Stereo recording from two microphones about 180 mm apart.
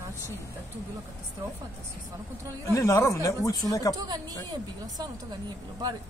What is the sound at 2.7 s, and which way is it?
Speech, 15° left (ahead or behind).